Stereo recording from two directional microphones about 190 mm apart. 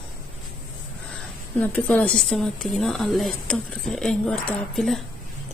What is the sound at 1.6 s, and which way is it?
A woman's voice, 5° left (ahead or behind).